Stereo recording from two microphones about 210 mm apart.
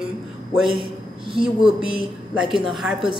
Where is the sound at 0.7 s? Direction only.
25° right (ahead or behind).